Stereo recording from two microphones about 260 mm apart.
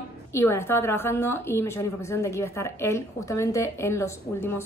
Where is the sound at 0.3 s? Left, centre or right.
Centre.